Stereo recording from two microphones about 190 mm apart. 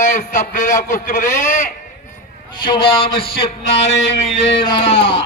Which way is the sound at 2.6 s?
25° left (ahead or behind).